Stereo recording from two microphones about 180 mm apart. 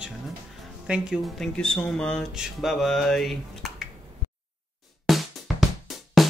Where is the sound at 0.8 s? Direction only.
5° right (ahead or behind).